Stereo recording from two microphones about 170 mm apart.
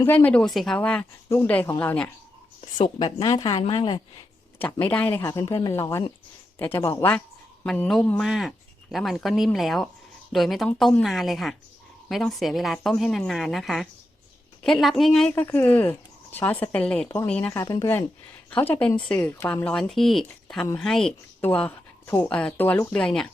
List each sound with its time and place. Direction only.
0.0 s speech: 10° left (ahead or behind)
2.8 s a woman's voice: 25° left (ahead or behind)
4.6 s speech: 10° left (ahead or behind)